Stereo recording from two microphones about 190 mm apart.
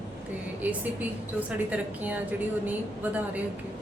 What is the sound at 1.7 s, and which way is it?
Speech, 10° right (ahead or behind).